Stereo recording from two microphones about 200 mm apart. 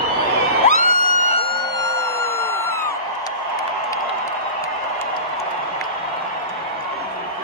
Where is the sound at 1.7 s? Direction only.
15° left (ahead or behind).